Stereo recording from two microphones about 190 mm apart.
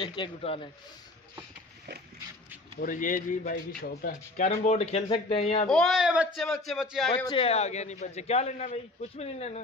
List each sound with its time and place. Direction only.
0.0 s speech: 25° left (ahead or behind)
2.8 s speech: 45° left (ahead or behind)
4.5 s speech: 30° left (ahead or behind)
5.7 s a man's voice: centre (ahead or behind)
7.2 s speech: 30° left (ahead or behind)